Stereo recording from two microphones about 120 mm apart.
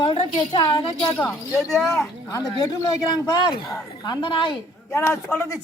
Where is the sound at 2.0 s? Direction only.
25° left (ahead or behind); by 4.6 s 45° left (ahead or behind).